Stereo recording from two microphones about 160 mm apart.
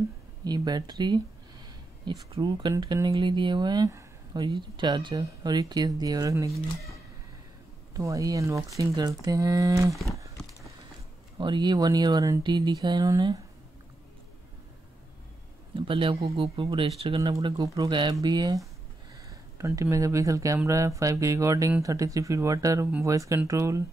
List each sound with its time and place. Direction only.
0.4 s speech: 25° right (ahead or behind)
7.9 s speech: 20° right (ahead or behind)
11.3 s speech: 30° right (ahead or behind)
15.7 s speech: 35° right (ahead or behind); by 23.8 s 20° right (ahead or behind)